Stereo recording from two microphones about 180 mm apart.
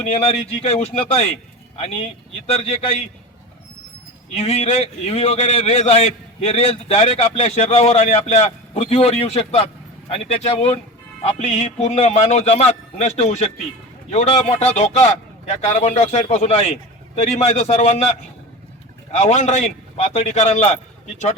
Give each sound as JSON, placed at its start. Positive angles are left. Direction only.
{"t": 0.1, "sound": "a man's voice", "side_deg": 35}
{"t": 2.5, "sound": "a man's voice", "side_deg": 35}
{"t": 4.4, "sound": "a man's voice", "side_deg": 35}
{"t": 19.1, "sound": "a man's voice", "side_deg": 40}